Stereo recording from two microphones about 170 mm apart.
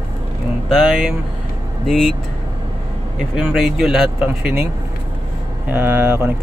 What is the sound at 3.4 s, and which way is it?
Speech, 5° right (ahead or behind).